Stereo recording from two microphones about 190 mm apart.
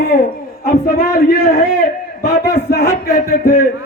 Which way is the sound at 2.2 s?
55° left (ahead or behind).